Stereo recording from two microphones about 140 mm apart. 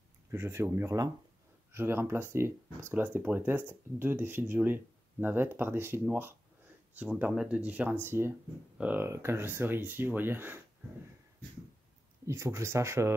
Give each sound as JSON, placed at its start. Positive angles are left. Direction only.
{"t": 0.3, "sound": "speech", "side_deg": -15}
{"t": 12.3, "sound": "speech", "side_deg": -20}